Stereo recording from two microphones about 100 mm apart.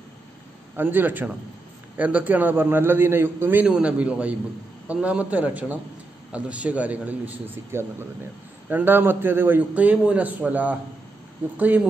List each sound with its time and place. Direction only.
0.7 s a man's voice: 20° right (ahead or behind)
3.6 s a man's voice: 10° right (ahead or behind)